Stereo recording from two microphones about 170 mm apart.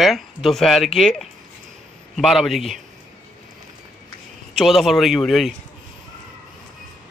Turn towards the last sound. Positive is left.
turn(degrees=0)  # may be behind; listen again after turning